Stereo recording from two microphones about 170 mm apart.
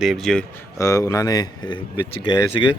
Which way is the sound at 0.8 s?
20° left (ahead or behind).